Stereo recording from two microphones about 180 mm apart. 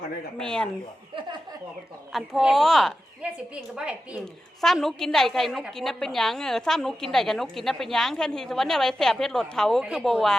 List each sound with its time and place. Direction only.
0.3 s a woman's voice: 5° left (ahead or behind)
2.1 s a woman's voice: centre (ahead or behind)